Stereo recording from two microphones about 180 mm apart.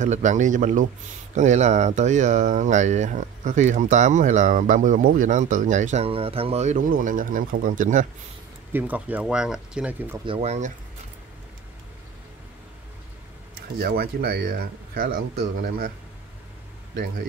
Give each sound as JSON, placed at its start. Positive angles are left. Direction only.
{"t": 0.0, "sound": "speech", "side_deg": -45}
{"t": 8.7, "sound": "speech", "side_deg": -10}
{"t": 10.2, "sound": "speech", "side_deg": -35}
{"t": 13.6, "sound": "speech", "side_deg": -60}